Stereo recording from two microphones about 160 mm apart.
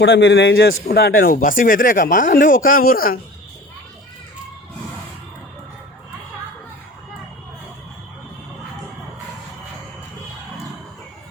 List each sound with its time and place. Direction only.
0.0 s a man's voice: 90° left; by 3.2 s 65° left (ahead or behind)